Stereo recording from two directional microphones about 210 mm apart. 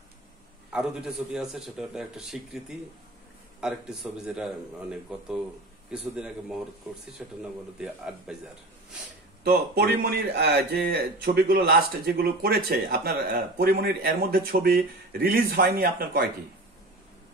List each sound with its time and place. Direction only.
0.7 s a man's voice: centre (ahead or behind)
9.4 s speech: 50° right (ahead or behind)